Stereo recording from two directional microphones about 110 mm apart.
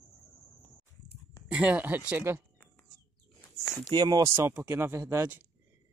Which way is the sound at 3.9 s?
40° right (ahead or behind).